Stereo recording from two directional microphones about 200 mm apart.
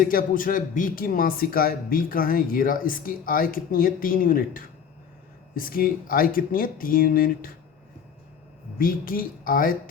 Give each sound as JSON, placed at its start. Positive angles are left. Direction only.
{"t": 0.0, "sound": "speech", "side_deg": 45}
{"t": 8.8, "sound": "speech", "side_deg": 45}